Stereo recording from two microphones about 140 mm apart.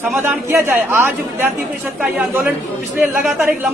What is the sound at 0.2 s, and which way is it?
A man's voice, 15° right (ahead or behind).